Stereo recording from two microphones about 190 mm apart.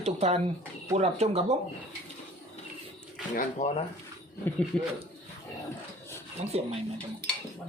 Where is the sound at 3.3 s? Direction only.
35° left (ahead or behind).